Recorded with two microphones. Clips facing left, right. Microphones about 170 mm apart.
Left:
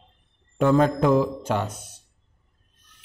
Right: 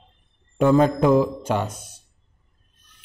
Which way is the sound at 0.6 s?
15° right (ahead or behind).